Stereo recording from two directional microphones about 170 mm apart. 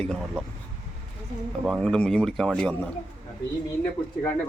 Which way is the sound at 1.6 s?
Centre (ahead or behind).